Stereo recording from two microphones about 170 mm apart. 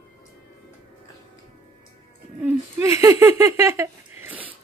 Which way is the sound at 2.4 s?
15° right (ahead or behind).